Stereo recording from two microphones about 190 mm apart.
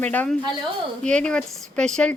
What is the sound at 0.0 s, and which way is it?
A woman's voice, 10° left (ahead or behind).